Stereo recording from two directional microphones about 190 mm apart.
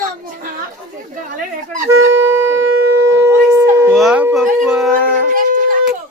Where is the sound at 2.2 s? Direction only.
10° right (ahead or behind).